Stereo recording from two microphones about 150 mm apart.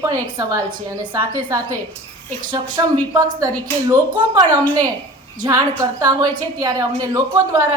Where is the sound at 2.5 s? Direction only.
25° right (ahead or behind).